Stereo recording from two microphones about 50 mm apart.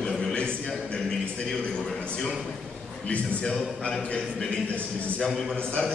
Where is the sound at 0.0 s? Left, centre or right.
Centre.